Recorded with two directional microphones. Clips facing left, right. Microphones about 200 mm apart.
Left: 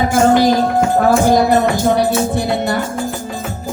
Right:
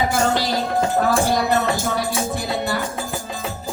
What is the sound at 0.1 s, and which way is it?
Music, 50° left (ahead or behind).